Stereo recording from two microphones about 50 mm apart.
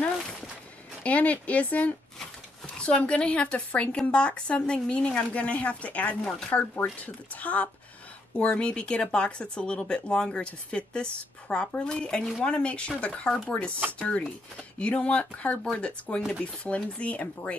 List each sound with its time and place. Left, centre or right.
1.0 s speech: left
6.5 s speech: left